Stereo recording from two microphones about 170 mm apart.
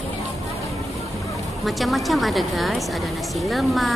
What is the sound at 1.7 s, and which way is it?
Speech, centre (ahead or behind).